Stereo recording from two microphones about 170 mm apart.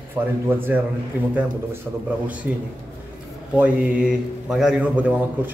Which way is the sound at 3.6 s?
5° right (ahead or behind).